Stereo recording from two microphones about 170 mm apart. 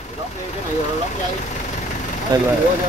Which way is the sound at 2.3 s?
25° right (ahead or behind).